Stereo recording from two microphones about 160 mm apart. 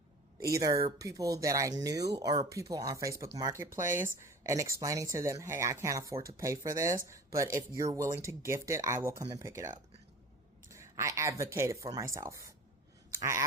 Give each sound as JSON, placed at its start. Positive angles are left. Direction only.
{"t": 0.3, "sound": "speech", "side_deg": -20}
{"t": 13.1, "sound": "scissors", "side_deg": -20}